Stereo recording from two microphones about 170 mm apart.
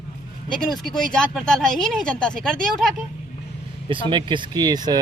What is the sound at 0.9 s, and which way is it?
Speech, 5° left (ahead or behind).